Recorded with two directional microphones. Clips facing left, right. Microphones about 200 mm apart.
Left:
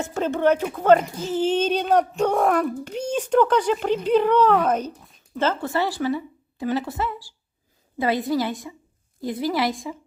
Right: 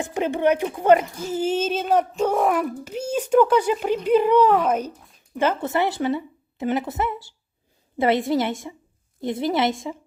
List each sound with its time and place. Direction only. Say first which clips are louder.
0.0 s a child's voice: even; 15° right (ahead or behind)